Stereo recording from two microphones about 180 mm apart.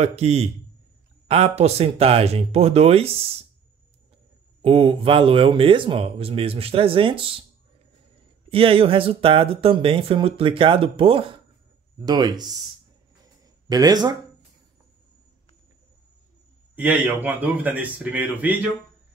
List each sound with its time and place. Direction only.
0.0 s speech: 35° right (ahead or behind)
4.6 s speech: 30° right (ahead or behind)
8.5 s speech: 30° right (ahead or behind)
13.7 s speech: 20° right (ahead or behind)
16.7 s a man's voice: 10° right (ahead or behind)